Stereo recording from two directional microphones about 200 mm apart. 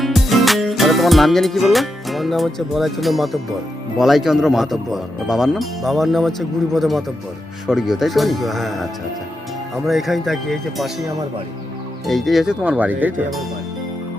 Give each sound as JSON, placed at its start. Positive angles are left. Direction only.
{"t": 0.0, "sound": "music", "side_deg": 0}
{"t": 3.9, "sound": "speech", "side_deg": 0}
{"t": 12.0, "sound": "speech", "side_deg": 0}